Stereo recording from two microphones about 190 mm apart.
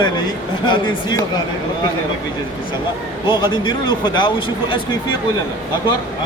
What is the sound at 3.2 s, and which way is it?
Speech, 25° left (ahead or behind).